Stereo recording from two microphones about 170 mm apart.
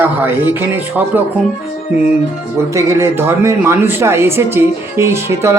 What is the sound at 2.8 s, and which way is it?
Speech, 15° right (ahead or behind).